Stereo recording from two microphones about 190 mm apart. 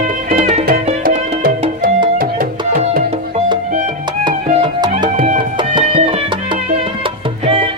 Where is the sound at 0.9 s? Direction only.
45° right (ahead or behind).